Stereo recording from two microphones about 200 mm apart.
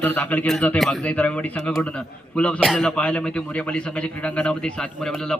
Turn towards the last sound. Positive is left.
turn(degrees=5)  # may be behind; listen again after turning